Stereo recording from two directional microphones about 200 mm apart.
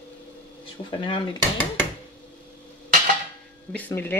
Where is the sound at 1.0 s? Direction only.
25° left (ahead or behind).